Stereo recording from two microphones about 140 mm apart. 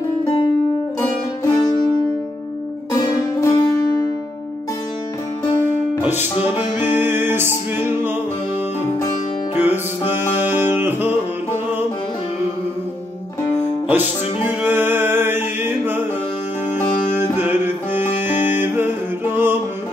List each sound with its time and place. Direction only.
0.2 s music: 40° left (ahead or behind)
2.9 s music: 30° left (ahead or behind)
6.4 s music: 15° right (ahead or behind)
9.6 s music: 15° right (ahead or behind)
13.8 s music: 15° right (ahead or behind)
17.4 s music: 15° right (ahead or behind)
18.3 s music: 60° left (ahead or behind)
18.6 s music: 15° right (ahead or behind)